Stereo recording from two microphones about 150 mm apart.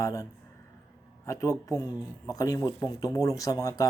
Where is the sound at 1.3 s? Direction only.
20° left (ahead or behind).